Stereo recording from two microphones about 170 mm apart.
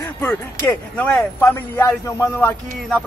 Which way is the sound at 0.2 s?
15° left (ahead or behind).